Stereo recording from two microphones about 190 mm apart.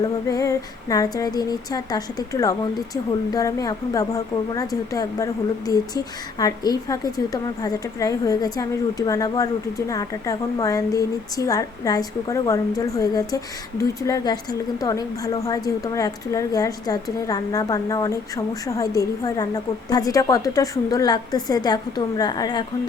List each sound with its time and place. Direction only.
0.3 s a woman's voice: 20° left (ahead or behind)